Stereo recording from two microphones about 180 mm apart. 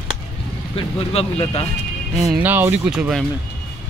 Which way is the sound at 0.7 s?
35° left (ahead or behind).